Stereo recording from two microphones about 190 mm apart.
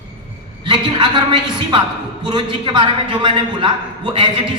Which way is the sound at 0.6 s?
25° right (ahead or behind).